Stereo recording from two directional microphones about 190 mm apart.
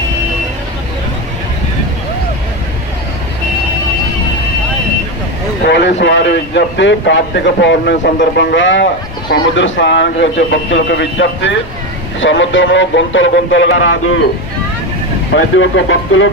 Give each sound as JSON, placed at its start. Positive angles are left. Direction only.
{"t": 5.6, "sound": "speech", "side_deg": 65}
{"t": 15.3, "sound": "speech", "side_deg": 80}